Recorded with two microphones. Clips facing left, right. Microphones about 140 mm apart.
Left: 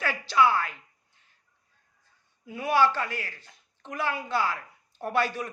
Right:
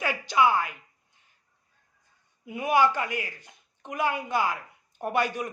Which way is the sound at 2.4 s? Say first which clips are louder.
Right 1 dB; 20° right (ahead or behind).